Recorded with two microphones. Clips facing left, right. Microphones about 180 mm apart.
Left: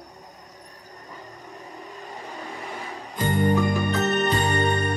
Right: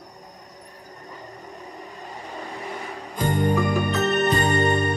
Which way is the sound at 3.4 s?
Centre (ahead or behind).